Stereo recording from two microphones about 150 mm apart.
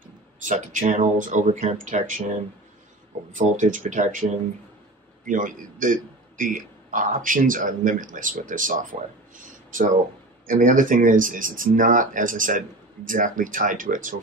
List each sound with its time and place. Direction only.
0.4 s a man's voice: 60° right (ahead or behind)
3.3 s a man's voice: 60° right (ahead or behind)
9.4 s a sound: 60° right (ahead or behind)
10.4 s a man's voice: 60° right (ahead or behind)